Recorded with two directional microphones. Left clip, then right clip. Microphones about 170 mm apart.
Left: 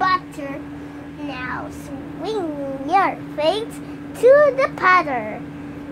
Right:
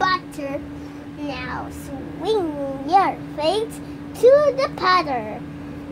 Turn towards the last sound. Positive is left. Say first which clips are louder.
# left 3 dB
turn(degrees=25)  # may be behind; listen again after turning